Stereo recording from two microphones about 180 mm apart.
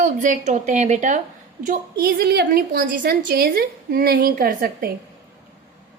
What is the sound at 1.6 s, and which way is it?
A woman's voice, 55° right (ahead or behind).